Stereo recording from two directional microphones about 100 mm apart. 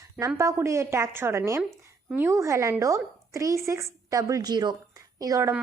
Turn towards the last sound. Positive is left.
turn(degrees=-30)  # may be behind; listen again after turning